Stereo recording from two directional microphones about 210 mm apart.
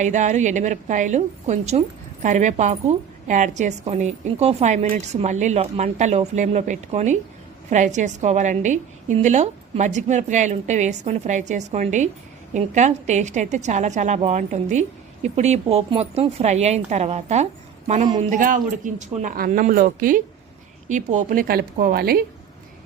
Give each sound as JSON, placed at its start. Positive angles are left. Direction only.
{"t": 0.0, "sound": "a woman's voice", "side_deg": -35}